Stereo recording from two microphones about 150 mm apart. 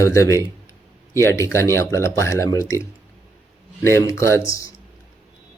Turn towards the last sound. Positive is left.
turn(degrees=20)  # may be behind; listen again after turning